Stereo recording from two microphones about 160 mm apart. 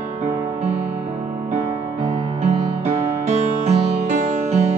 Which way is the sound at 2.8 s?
45° right (ahead or behind).